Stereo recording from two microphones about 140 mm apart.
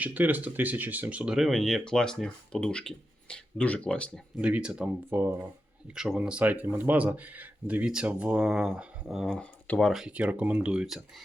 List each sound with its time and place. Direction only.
0.0 s speech: 10° right (ahead or behind); by 4.2 s 10° left (ahead or behind)
4.4 s speech: 10° right (ahead or behind)
5.1 s speech: 15° right (ahead or behind)
5.9 s speech: 5° right (ahead or behind)